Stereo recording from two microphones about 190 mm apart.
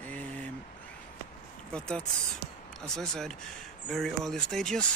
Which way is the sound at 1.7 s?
5° left (ahead or behind).